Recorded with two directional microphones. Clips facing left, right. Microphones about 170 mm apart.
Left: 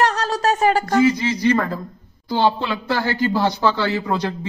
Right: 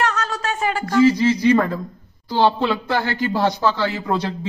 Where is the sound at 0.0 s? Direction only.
35° left (ahead or behind).